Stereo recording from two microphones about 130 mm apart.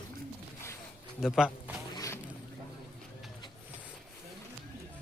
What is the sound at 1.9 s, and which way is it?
Zipper, 25° left (ahead or behind).